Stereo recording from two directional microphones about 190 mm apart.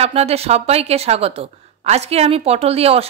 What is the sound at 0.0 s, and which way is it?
Speech, 35° right (ahead or behind).